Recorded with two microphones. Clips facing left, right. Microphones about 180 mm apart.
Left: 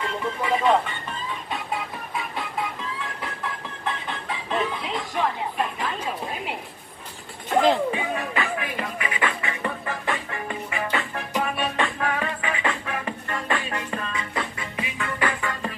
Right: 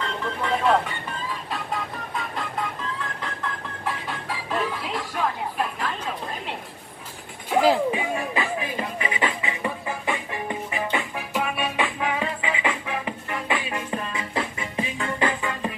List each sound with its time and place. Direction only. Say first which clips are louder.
0.0 s music: left 1 dB; 5° left (ahead or behind)
2.1 s music: even; 5° left (ahead or behind)
3.8 s music: even; 5° right (ahead or behind)
7.4 s music: even; 10° right (ahead or behind)
8.5 s music: right 1 dB; 30° right (ahead or behind)
9.2 s music: even; 15° right (ahead or behind)
14.8 s music: right 2 dB; 30° right (ahead or behind)